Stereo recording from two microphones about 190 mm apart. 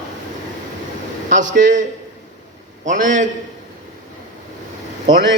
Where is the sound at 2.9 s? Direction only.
40° right (ahead or behind).